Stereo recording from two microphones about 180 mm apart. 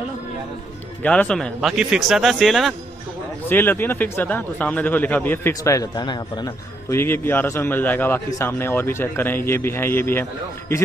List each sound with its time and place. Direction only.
1.0 s speech: 5° left (ahead or behind)
3.4 s speech: 10° left (ahead or behind)